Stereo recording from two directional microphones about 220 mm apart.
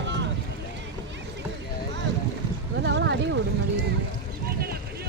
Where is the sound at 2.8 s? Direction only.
50° right (ahead or behind).